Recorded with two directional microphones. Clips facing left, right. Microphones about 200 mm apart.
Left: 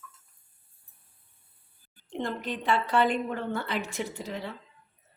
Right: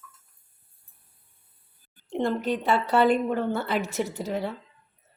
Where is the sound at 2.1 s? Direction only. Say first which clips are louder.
Right 7 dB; 40° right (ahead or behind).